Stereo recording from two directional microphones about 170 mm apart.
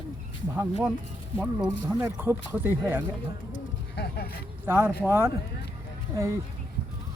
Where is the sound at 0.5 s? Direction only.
10° right (ahead or behind).